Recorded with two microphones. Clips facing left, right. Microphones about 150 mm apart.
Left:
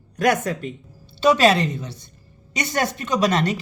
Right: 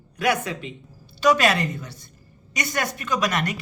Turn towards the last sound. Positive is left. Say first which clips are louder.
# left 4 dB
turn(degrees=25)  # may be behind; listen again after turning